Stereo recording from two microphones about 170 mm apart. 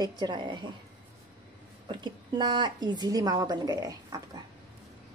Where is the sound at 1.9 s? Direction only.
25° right (ahead or behind).